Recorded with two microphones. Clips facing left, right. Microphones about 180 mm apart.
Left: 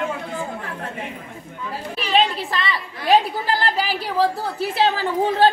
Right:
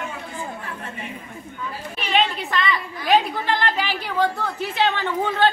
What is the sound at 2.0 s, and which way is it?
A woman's voice, 35° left (ahead or behind).